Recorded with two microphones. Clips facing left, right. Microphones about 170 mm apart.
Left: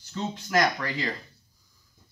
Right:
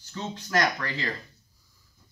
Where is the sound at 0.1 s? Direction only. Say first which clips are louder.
Left 2 dB; 15° left (ahead or behind).